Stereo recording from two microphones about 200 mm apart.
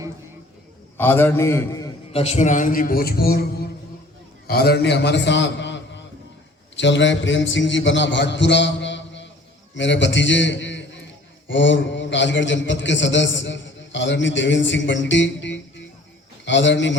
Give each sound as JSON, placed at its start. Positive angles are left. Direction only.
{"t": 0.9, "sound": "a man's voice", "side_deg": 10}
{"t": 2.1, "sound": "a man's voice", "side_deg": 30}
{"t": 4.4, "sound": "a man's voice", "side_deg": 50}